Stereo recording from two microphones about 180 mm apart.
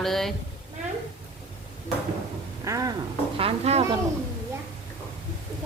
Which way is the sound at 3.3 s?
35° right (ahead or behind).